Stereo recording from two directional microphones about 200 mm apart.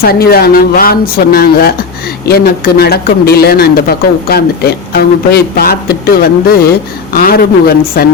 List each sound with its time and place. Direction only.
0.0 s speech: 50° left (ahead or behind)